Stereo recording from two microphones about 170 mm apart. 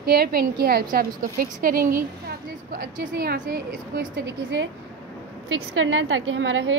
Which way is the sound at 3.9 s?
80° right.